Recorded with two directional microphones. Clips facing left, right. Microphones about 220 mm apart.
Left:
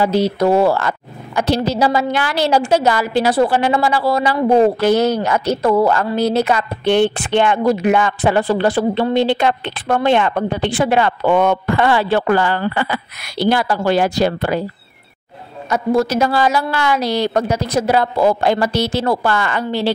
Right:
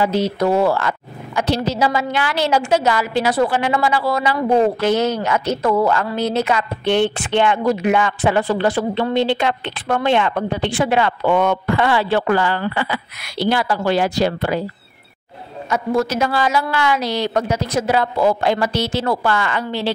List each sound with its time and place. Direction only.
0.0 s a woman's voice: 35° left (ahead or behind)
15.7 s a woman's voice: 35° left (ahead or behind)